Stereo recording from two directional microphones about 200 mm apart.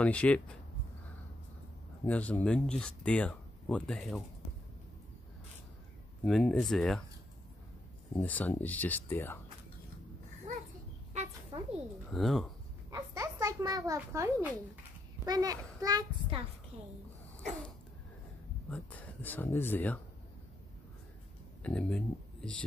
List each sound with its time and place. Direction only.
0.0 s speech: 5° left (ahead or behind)
2.0 s speech: 5° left (ahead or behind)
6.2 s speech: centre (ahead or behind)
8.2 s speech: 10° left (ahead or behind)
11.5 s a sound: 25° right (ahead or behind)
12.1 s speech: centre (ahead or behind)
12.9 s a sound: 15° right (ahead or behind)
15.2 s a child's voice: 20° right (ahead or behind)
17.4 s a sound: centre (ahead or behind)
18.7 s speech: 10° left (ahead or behind)
21.6 s speech: 5° left (ahead or behind)